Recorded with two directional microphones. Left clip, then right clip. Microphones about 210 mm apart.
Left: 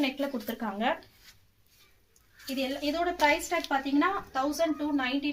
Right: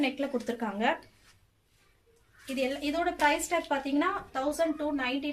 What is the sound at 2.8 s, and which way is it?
Speech, 35° right (ahead or behind).